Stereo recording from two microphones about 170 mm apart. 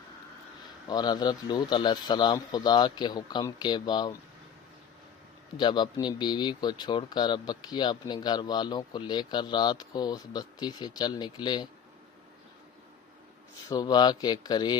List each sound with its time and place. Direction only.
0.9 s speech: 25° left (ahead or behind)
5.5 s speech: 25° left (ahead or behind)
13.7 s speech: 25° left (ahead or behind)